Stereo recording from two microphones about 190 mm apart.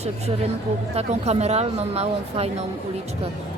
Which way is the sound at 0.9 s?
35° right (ahead or behind).